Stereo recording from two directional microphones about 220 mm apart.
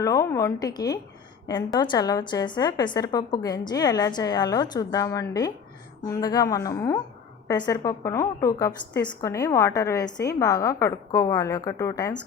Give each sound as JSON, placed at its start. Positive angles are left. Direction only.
{"t": 0.0, "sound": "a woman's voice", "side_deg": 15}